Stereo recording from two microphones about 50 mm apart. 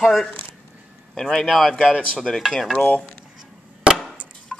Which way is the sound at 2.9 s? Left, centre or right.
Left.